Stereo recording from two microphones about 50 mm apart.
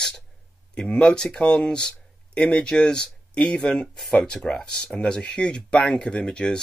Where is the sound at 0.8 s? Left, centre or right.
Centre.